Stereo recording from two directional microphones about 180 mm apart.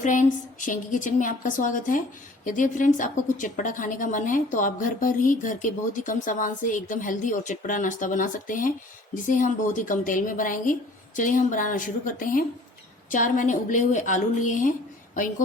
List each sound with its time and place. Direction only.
0.0 s a woman's voice: 45° left (ahead or behind)